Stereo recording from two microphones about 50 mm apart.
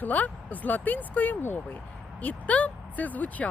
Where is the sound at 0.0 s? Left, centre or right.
Left.